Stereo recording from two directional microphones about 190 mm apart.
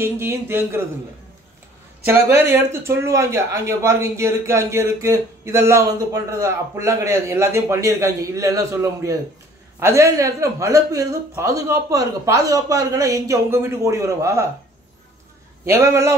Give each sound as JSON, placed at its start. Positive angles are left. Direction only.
{"t": 0.0, "sound": "a man's voice", "side_deg": -10}
{"t": 2.0, "sound": "a man's voice", "side_deg": -10}
{"t": 15.6, "sound": "a man's voice", "side_deg": -15}